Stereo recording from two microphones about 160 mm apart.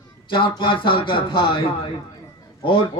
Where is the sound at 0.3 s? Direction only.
30° left (ahead or behind).